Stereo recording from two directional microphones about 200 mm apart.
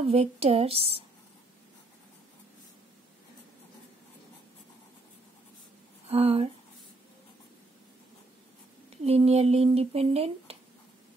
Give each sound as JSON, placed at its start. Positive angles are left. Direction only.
{"t": 0.0, "sound": "speech", "side_deg": -30}
{"t": 6.0, "sound": "speech", "side_deg": -30}
{"t": 9.0, "sound": "speech", "side_deg": -30}